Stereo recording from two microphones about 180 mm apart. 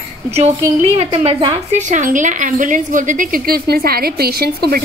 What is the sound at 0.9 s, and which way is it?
Speech, 35° right (ahead or behind).